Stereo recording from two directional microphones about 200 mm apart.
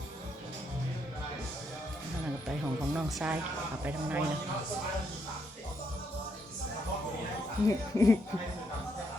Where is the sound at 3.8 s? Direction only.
10° right (ahead or behind).